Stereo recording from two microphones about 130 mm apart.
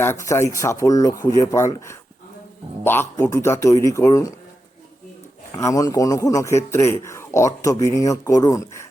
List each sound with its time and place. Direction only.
0.0 s a man's voice: 20° left (ahead or behind)
5.5 s a man's voice: 25° left (ahead or behind)